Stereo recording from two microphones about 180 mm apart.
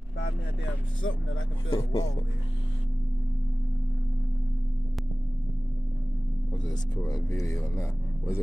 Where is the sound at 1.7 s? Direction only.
30° left (ahead or behind).